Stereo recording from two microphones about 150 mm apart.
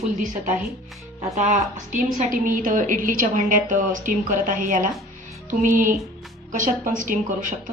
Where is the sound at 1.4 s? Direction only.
55° right (ahead or behind).